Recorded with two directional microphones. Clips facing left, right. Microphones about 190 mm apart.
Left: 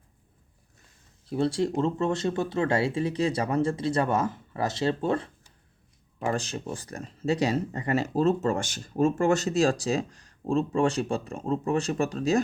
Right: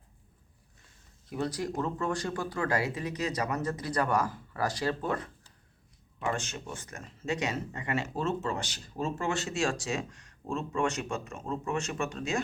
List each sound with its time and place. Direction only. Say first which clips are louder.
1.3 s speech: left 7 dB; 30° left (ahead or behind)